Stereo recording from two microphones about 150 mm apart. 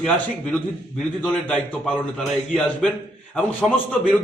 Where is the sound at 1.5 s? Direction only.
10° left (ahead or behind).